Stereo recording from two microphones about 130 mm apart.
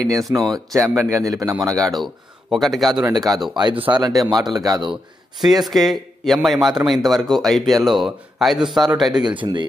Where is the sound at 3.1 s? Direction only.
30° right (ahead or behind).